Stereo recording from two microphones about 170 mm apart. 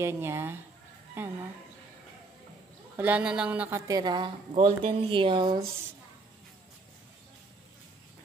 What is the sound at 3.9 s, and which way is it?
Speech, 25° right (ahead or behind).